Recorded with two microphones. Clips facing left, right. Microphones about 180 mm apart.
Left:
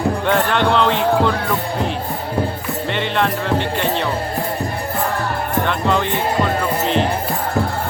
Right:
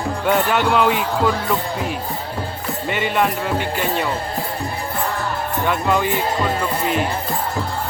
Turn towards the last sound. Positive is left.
turn(degrees=-5)  # may be behind; listen again after turning